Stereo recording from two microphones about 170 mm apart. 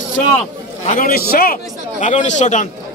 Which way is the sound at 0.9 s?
55° left (ahead or behind).